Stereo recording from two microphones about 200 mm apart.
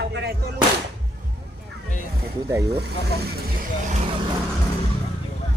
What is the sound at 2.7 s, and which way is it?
Speech, 55° right (ahead or behind).